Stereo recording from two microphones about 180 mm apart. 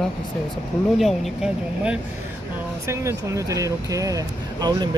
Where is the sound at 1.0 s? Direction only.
5° right (ahead or behind).